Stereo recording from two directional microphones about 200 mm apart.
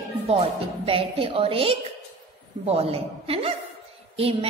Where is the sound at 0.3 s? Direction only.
30° right (ahead or behind).